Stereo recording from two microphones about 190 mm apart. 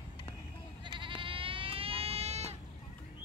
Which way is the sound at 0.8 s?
25° right (ahead or behind).